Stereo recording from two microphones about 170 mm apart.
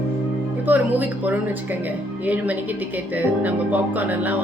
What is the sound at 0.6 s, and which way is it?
Speech, 10° right (ahead or behind).